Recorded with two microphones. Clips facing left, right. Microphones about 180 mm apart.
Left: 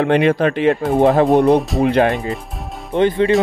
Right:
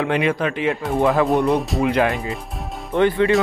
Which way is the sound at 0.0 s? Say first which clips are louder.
Left 6 dB; 40° left (ahead or behind).